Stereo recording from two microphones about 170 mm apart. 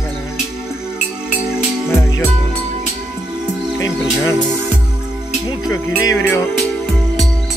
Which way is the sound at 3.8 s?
20° left (ahead or behind).